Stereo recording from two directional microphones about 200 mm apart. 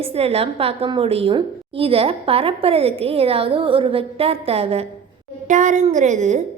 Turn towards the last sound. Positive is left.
turn(degrees=-35)  # may be behind; listen again after turning